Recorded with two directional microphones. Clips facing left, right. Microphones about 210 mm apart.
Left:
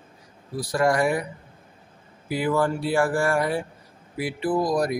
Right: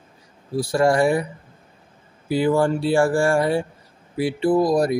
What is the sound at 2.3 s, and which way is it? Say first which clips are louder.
Speech: right 5 dB; 30° right (ahead or behind).